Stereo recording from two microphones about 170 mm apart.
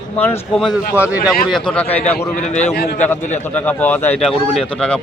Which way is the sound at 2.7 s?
65° left (ahead or behind).